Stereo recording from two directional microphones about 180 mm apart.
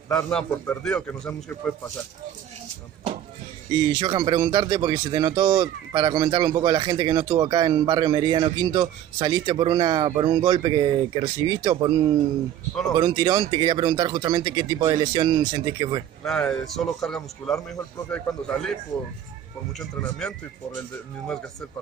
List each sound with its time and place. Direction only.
0.1 s a man's voice: 5° left (ahead or behind)
3.7 s speech: 25° right (ahead or behind)
16.3 s a man's voice: centre (ahead or behind)
20.0 s a man's voice: 5° left (ahead or behind)